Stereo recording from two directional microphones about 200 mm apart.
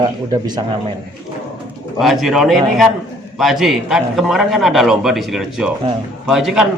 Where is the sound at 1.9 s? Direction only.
Centre (ahead or behind).